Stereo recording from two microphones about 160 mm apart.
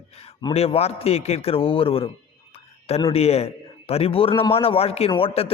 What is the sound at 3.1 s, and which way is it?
A man's voice, 40° left (ahead or behind).